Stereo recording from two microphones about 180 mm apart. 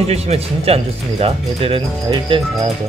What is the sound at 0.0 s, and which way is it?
Speech, 35° right (ahead or behind).